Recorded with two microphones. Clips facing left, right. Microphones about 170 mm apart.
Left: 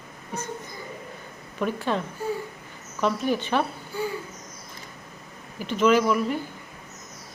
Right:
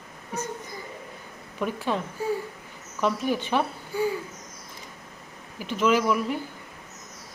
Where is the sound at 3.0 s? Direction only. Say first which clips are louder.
Left 1 dB; 10° right (ahead or behind).